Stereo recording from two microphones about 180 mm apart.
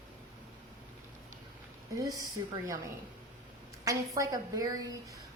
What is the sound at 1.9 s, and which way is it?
Speech, 20° right (ahead or behind).